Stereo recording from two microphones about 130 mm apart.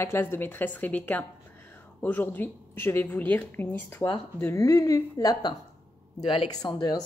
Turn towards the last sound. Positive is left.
turn(degrees=35)  # may be behind; listen again after turning